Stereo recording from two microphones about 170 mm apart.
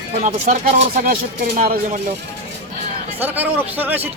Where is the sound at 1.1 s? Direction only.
60° right (ahead or behind).